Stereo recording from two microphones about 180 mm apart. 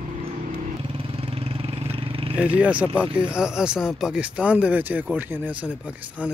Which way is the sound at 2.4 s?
10° right (ahead or behind).